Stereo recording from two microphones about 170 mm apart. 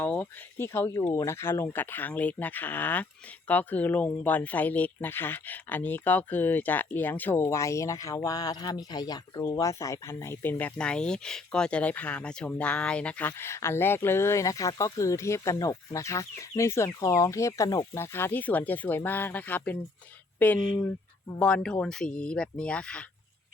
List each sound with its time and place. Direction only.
0.0 s speech: 10° left (ahead or behind)
20.6 s speech: 30° left (ahead or behind)
21.3 s speech: 5° left (ahead or behind)